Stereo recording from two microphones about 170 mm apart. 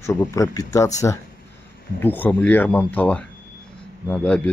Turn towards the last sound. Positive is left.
turn(degrees=10)  # may be behind; listen again after turning